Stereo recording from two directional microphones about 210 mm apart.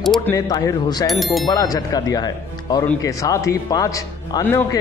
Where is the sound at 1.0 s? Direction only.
Centre (ahead or behind).